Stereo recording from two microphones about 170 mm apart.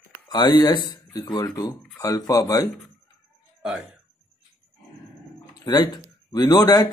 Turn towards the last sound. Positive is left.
turn(degrees=20)  # may be behind; listen again after turning